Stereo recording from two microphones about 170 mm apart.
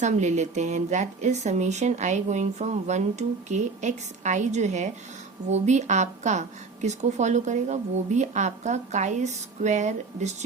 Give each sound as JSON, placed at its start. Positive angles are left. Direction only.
{"t": 0.0, "sound": "speech", "side_deg": -45}